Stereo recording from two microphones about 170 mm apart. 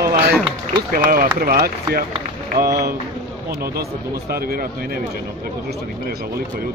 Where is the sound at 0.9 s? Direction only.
55° right (ahead or behind).